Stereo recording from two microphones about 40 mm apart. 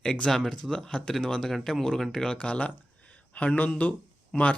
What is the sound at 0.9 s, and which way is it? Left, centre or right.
Speech, centre.